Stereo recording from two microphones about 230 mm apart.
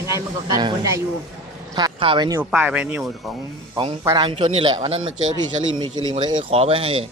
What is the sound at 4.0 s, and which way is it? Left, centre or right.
Speech, centre.